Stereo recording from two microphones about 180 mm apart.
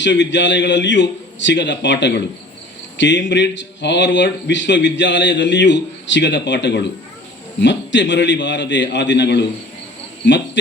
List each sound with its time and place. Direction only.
0.0 s speech: 85° left
7.6 s a man's voice: 85° left
10.2 s speech: 85° left